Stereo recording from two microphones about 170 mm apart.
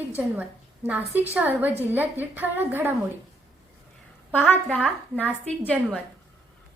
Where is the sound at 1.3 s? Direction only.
10° right (ahead or behind).